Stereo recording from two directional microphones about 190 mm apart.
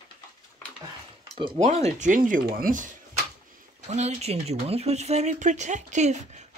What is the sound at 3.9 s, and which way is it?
Speech, 35° right (ahead or behind).